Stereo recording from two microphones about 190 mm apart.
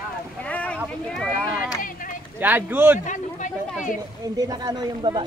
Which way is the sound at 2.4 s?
10° right (ahead or behind).